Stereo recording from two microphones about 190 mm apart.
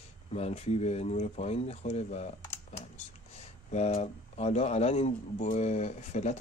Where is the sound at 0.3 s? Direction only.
35° left (ahead or behind).